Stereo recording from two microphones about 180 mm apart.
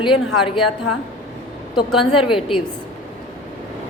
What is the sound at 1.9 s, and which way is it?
Speech, centre (ahead or behind).